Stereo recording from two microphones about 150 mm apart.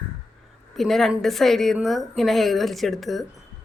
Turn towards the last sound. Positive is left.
turn(degrees=0)  # may be behind; listen again after turning